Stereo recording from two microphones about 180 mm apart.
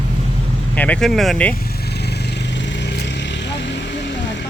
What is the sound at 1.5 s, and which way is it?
Vehicle, 55° left (ahead or behind).